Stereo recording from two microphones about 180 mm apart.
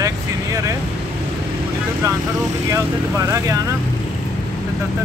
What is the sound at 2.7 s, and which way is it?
Speech, 15° right (ahead or behind).